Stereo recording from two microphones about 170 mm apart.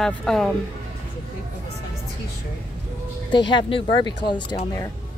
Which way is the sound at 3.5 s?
30° left (ahead or behind).